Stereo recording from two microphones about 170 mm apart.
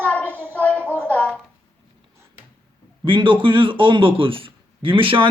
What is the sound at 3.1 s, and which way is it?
A man's voice, 30° right (ahead or behind).